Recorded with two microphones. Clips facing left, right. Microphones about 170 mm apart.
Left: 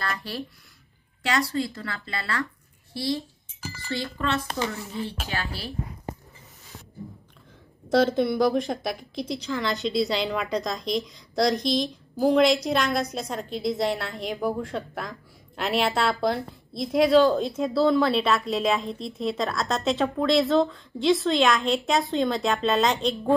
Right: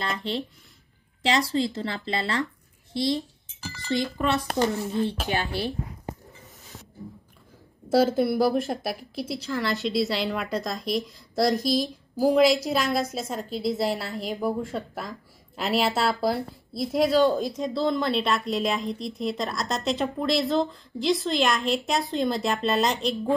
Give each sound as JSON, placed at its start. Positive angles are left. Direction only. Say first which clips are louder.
{"t": 0.0, "sound": "speech", "louder": "right 3 dB", "side_deg": -20}
{"t": 1.5, "sound": "speech", "louder": "right 3 dB", "side_deg": -25}
{"t": 5.3, "sound": "speech", "louder": "right 5 dB", "side_deg": -20}
{"t": 7.9, "sound": "a woman's voice", "louder": "even", "side_deg": -5}
{"t": 17.3, "sound": "speech", "louder": "left 1 dB", "side_deg": -40}
{"t": 17.6, "sound": "a woman's voice", "louder": "left 4 dB", "side_deg": 0}